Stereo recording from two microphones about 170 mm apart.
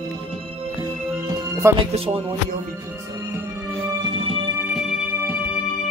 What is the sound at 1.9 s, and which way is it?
Speech, 35° right (ahead or behind).